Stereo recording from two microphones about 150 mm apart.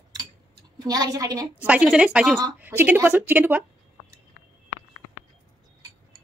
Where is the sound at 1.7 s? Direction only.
5° right (ahead or behind).